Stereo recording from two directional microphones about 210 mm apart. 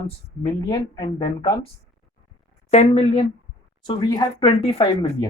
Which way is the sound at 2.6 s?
30° left (ahead or behind).